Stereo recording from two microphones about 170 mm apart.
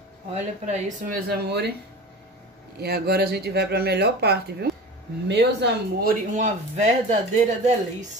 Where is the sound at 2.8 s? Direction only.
65° right (ahead or behind).